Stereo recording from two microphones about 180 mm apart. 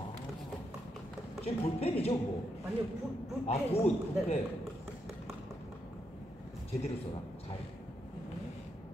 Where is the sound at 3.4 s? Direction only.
35° left (ahead or behind).